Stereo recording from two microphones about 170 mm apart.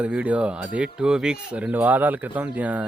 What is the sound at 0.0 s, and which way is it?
Speech, 10° right (ahead or behind).